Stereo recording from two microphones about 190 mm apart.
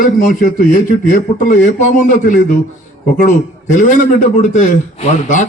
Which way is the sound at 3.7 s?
40° left (ahead or behind).